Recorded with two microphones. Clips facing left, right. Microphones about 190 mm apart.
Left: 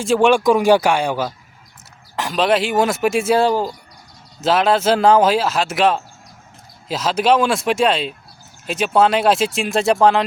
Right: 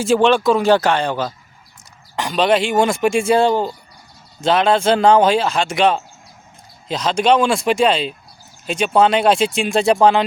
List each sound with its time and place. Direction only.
0.2 s speech: 10° left (ahead or behind)